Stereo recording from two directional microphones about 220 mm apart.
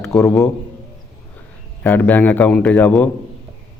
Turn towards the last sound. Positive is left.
turn(degrees=5)  # may be behind; listen again after turning